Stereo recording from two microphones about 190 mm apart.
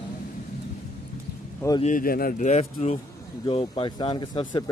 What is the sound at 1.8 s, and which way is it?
A man's voice, 45° left (ahead or behind).